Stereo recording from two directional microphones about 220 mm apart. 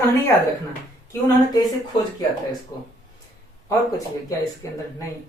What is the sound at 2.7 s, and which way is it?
Speech, 15° left (ahead or behind).